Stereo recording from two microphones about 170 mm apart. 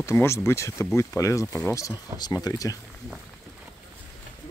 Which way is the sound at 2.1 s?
20° right (ahead or behind).